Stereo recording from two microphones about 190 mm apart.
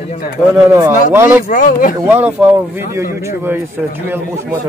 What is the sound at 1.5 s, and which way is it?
Speech, 45° left (ahead or behind).